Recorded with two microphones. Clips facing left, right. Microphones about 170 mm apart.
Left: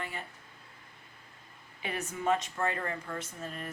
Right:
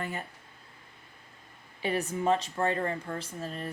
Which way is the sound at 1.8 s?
35° right (ahead or behind).